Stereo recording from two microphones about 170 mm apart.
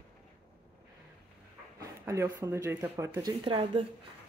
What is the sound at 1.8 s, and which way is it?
Speech, 20° right (ahead or behind).